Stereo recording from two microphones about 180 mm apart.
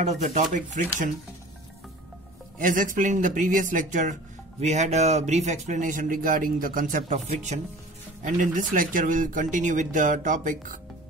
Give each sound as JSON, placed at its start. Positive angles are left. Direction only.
{"t": 0.0, "sound": "speech", "side_deg": -40}
{"t": 2.6, "sound": "speech", "side_deg": -50}
{"t": 7.1, "sound": "speech", "side_deg": -35}
{"t": 8.2, "sound": "speech", "side_deg": -50}